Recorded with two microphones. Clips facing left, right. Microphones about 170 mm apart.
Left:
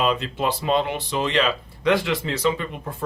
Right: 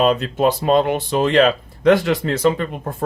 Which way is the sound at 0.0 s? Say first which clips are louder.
Right 7 dB; 45° right (ahead or behind).